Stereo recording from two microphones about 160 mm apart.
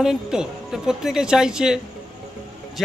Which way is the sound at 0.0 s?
5° right (ahead or behind).